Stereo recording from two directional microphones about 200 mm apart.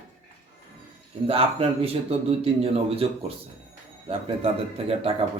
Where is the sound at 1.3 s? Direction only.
30° right (ahead or behind).